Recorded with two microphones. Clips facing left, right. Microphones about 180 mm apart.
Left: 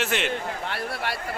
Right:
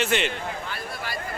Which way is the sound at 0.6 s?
70° left (ahead or behind).